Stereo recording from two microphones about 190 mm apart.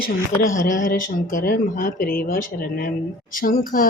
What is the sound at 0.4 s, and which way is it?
Speech, 45° left (ahead or behind).